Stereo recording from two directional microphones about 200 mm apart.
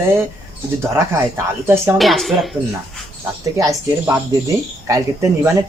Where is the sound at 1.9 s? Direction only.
Centre (ahead or behind).